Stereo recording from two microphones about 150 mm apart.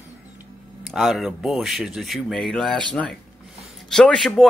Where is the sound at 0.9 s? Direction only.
Centre (ahead or behind).